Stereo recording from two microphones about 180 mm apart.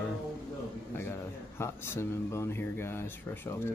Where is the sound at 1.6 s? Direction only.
15° left (ahead or behind).